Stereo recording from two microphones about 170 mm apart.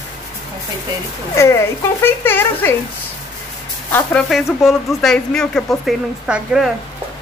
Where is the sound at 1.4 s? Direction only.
15° left (ahead or behind).